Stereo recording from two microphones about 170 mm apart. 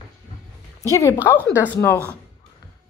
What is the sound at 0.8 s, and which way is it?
Speech, 15° left (ahead or behind).